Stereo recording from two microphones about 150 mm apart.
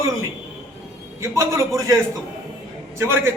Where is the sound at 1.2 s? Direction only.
20° right (ahead or behind).